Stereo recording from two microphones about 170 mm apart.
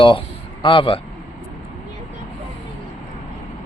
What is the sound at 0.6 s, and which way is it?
Speech, 30° left (ahead or behind).